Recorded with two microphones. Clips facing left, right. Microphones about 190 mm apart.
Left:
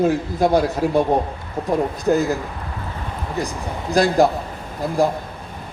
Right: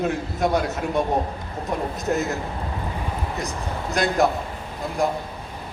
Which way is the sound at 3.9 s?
30° left (ahead or behind).